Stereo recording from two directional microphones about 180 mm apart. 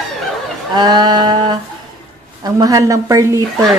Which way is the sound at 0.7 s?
25° right (ahead or behind).